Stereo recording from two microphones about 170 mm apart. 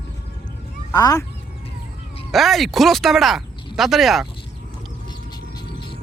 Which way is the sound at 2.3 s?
Centre (ahead or behind).